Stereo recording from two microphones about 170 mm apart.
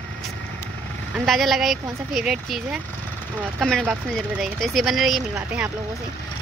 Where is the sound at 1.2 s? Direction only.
Centre (ahead or behind).